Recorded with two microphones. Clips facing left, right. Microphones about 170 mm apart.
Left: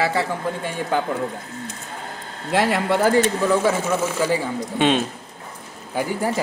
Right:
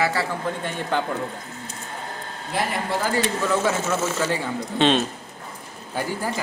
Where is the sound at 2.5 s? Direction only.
90° left.